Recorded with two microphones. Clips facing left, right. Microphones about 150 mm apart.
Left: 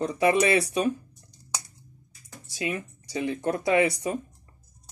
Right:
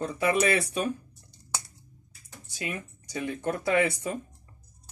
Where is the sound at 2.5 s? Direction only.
20° left (ahead or behind).